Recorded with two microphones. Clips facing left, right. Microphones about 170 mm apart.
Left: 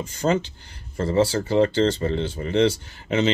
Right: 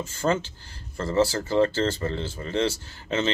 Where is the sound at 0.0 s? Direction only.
15° left (ahead or behind).